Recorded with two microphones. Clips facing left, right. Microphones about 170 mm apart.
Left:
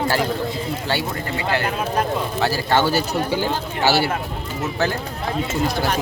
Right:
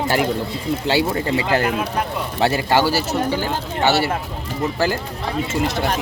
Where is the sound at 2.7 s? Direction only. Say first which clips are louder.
Right 1 dB; 5° right (ahead or behind).